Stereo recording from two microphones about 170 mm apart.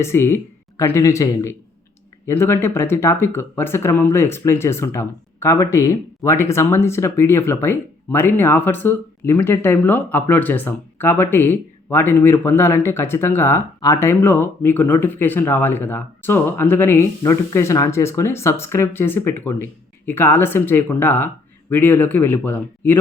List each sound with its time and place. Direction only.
0.0 s speech: 15° left (ahead or behind)